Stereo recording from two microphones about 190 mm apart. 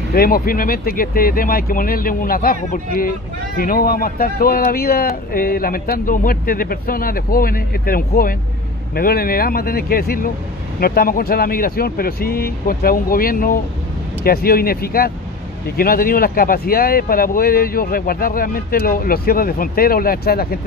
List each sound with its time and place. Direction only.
0.1 s speech: 50° left (ahead or behind)